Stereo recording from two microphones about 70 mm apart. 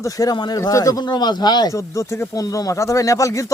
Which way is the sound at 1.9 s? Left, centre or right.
Left.